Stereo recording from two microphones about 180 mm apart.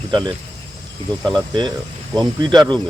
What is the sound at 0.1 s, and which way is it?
Speech, 25° right (ahead or behind).